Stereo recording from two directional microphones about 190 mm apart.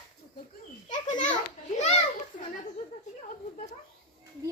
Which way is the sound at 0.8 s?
40° left (ahead or behind).